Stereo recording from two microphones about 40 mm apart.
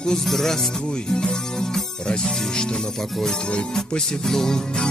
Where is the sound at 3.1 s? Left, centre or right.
Centre.